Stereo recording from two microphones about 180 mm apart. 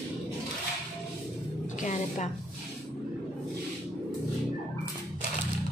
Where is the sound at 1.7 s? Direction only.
45° left (ahead or behind).